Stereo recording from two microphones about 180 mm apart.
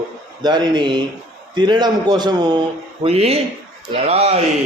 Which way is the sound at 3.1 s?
35° right (ahead or behind).